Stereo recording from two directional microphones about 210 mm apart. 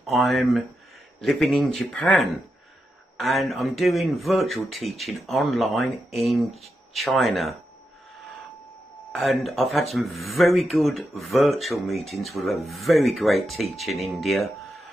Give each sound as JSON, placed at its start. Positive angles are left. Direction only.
{"t": 0.0, "sound": "speech", "side_deg": 0}
{"t": 9.1, "sound": "speech", "side_deg": 0}